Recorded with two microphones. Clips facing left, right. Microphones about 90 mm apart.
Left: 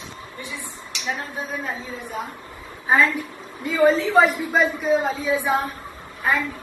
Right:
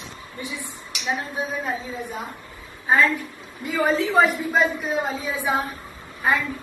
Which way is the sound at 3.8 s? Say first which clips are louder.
Left 3 dB; centre (ahead or behind).